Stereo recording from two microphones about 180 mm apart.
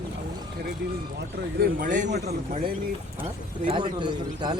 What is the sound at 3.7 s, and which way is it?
Speech, 25° right (ahead or behind).